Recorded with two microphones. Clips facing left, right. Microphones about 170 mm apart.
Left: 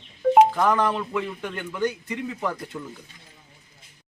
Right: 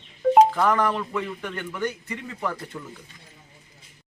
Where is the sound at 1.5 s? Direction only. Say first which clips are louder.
Left 4 dB; 15° left (ahead or behind).